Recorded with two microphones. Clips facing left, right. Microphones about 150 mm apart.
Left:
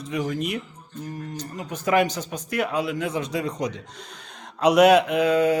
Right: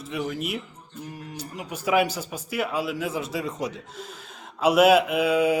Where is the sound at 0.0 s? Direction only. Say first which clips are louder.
Left 3 dB; 5° right (ahead or behind).